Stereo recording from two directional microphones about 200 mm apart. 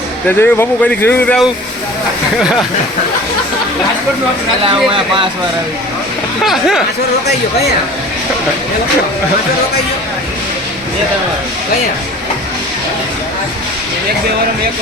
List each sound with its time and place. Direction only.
0.3 s speech: 10° left (ahead or behind)
4.6 s speech: 25° right (ahead or behind)
6.4 s speech: centre (ahead or behind)